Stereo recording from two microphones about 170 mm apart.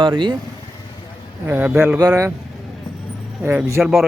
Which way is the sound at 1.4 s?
10° right (ahead or behind).